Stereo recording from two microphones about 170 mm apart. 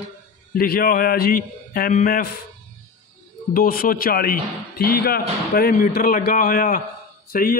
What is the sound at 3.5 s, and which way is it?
A man's voice, 60° left (ahead or behind).